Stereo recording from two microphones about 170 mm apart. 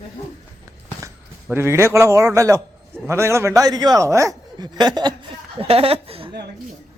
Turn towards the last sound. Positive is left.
turn(degrees=-35)  # may be behind; listen again after turning